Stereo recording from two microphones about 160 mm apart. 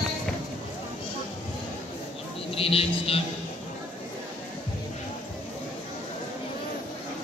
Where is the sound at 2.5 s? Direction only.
35° left (ahead or behind).